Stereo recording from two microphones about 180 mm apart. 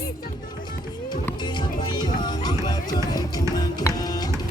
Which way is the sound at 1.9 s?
25° left (ahead or behind).